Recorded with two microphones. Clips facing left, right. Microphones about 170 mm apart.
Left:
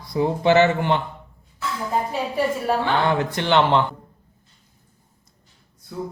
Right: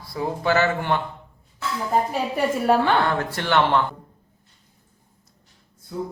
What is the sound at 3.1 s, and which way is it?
Speech, 15° left (ahead or behind).